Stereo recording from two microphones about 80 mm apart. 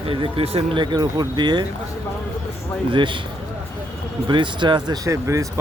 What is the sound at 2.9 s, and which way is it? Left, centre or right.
Speech, right.